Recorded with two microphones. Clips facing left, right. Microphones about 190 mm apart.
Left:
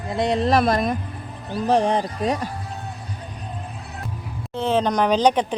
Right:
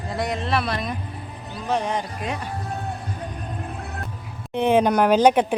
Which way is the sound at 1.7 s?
30° left (ahead or behind).